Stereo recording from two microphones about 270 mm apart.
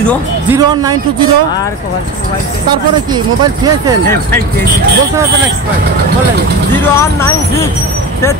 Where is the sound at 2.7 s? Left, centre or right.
Centre.